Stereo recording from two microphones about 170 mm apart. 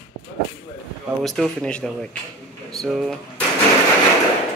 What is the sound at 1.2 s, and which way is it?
Speech, centre (ahead or behind).